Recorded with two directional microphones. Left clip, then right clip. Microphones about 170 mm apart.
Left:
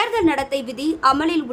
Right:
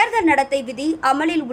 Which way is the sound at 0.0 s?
5° right (ahead or behind).